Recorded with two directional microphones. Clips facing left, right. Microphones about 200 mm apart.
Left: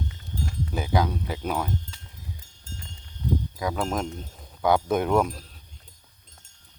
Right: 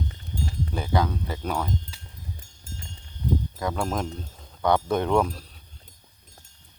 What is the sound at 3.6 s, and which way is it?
Speech, centre (ahead or behind).